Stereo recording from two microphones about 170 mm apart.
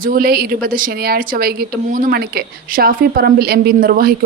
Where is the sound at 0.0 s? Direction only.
60° right (ahead or behind).